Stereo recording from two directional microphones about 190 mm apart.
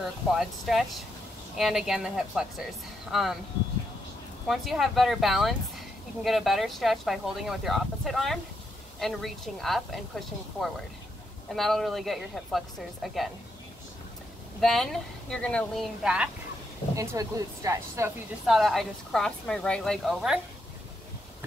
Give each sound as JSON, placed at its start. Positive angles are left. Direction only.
{"t": 0.3, "sound": "speech", "side_deg": 0}
{"t": 4.5, "sound": "speech", "side_deg": 0}
{"t": 14.6, "sound": "speech", "side_deg": 0}
{"t": 16.9, "sound": "speech", "side_deg": -15}
{"t": 18.5, "sound": "speech", "side_deg": 0}